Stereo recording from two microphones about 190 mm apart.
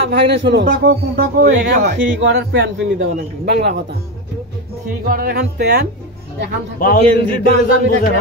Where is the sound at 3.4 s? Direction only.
45° right (ahead or behind).